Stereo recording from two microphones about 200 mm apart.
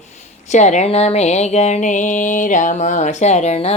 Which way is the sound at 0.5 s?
35° left (ahead or behind).